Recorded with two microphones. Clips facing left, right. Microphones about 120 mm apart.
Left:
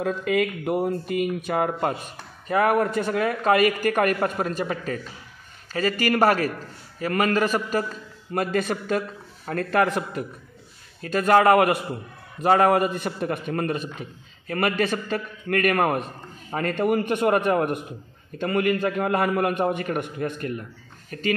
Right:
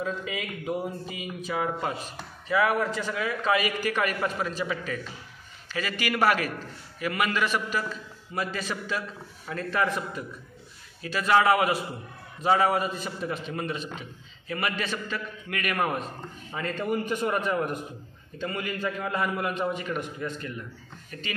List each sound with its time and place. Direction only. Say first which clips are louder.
0.0 s a man's voice: left 9 dB; 65° left (ahead or behind); by 8.0 s 45° left (ahead or behind)
8.3 s a man's voice: left 7 dB; 55° left (ahead or behind)
11.0 s a man's voice: left 4 dB; 45° left (ahead or behind)